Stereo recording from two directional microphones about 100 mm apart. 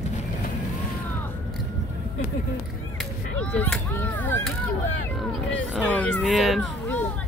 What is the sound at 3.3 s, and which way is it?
Speech, 10° left (ahead or behind).